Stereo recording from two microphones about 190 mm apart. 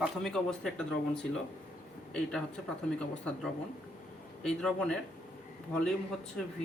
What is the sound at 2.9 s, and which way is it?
Speech, 5° left (ahead or behind).